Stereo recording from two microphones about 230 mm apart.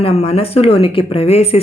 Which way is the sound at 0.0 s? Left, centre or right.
Left.